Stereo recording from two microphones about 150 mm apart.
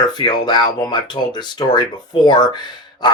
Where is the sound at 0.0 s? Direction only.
30° left (ahead or behind).